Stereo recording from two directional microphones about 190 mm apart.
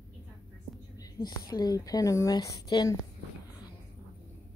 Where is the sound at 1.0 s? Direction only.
20° left (ahead or behind).